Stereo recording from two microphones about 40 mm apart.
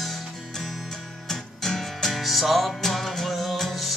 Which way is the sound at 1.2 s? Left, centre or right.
Centre.